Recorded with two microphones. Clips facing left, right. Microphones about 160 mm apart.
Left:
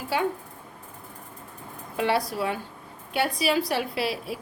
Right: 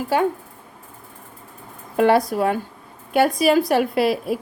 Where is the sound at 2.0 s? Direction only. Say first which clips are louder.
Right 9 dB; 50° right (ahead or behind).